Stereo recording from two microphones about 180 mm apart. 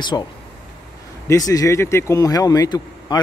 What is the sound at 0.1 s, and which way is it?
A man's voice, 15° left (ahead or behind).